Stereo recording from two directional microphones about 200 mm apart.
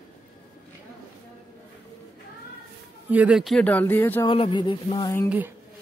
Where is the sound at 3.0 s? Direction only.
5° right (ahead or behind); by 4.2 s 10° left (ahead or behind).